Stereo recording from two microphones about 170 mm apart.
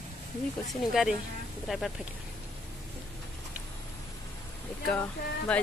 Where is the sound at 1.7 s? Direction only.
Centre (ahead or behind).